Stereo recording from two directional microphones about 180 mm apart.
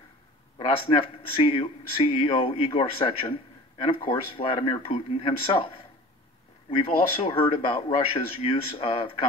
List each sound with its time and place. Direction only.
0.6 s speech: 30° left (ahead or behind)